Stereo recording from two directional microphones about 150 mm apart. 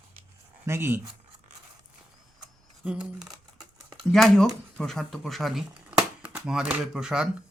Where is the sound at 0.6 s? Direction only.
15° right (ahead or behind).